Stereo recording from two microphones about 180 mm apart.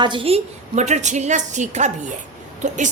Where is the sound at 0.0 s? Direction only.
30° right (ahead or behind).